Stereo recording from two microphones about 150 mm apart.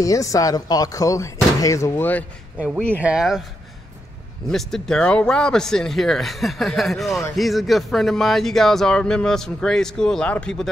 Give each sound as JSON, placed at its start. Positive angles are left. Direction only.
{"t": 0.0, "sound": "speech", "side_deg": 20}
{"t": 2.9, "sound": "speech", "side_deg": -10}
{"t": 4.5, "sound": "speech", "side_deg": 5}